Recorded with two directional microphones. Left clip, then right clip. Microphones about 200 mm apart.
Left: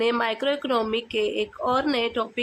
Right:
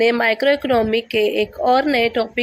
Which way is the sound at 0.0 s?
20° right (ahead or behind).